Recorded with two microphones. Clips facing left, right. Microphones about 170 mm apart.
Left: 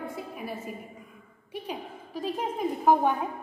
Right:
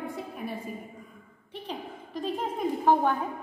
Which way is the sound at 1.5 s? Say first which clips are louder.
Left 1 dB; 10° left (ahead or behind).